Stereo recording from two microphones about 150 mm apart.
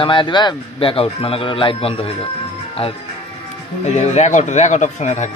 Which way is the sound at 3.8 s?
50° left (ahead or behind).